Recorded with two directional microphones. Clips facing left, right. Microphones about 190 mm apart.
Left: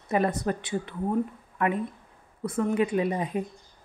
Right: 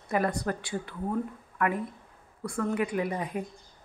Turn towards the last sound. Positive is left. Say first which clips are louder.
# left 4 dB
turn(degrees=20)  # may be behind; listen again after turning